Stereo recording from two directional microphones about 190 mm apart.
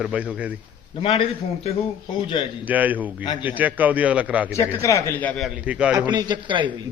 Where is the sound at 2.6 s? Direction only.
10° right (ahead or behind).